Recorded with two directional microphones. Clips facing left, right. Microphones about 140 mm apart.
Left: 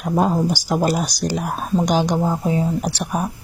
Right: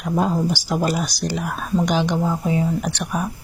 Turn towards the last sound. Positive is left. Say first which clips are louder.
# left 2 dB
turn(degrees=40)  # may be behind; listen again after turning